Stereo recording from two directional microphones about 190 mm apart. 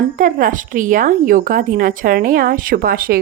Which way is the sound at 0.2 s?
45° right (ahead or behind).